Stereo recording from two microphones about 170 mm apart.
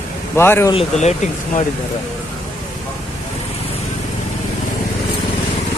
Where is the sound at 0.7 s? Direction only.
40° left (ahead or behind).